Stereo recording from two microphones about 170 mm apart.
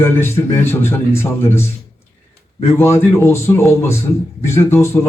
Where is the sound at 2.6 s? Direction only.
15° left (ahead or behind).